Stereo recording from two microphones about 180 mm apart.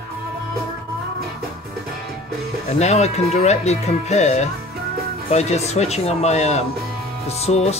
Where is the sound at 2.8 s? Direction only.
40° left (ahead or behind).